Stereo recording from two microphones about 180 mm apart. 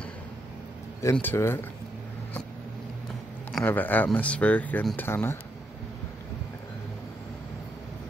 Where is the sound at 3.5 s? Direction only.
10° left (ahead or behind).